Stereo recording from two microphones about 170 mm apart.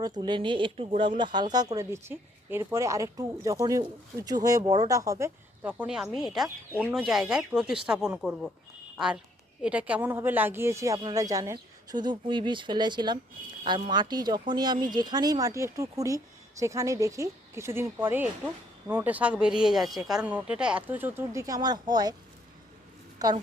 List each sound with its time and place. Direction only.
0.0 s speech: 25° right (ahead or behind)
5.2 s speech: 5° right (ahead or behind); by 22.1 s 25° right (ahead or behind)
23.1 s a sound: 25° right (ahead or behind)